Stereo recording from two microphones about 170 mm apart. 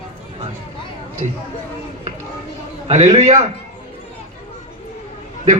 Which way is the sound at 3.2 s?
45° right (ahead or behind).